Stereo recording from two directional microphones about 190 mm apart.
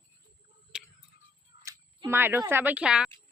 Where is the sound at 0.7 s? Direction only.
5° right (ahead or behind).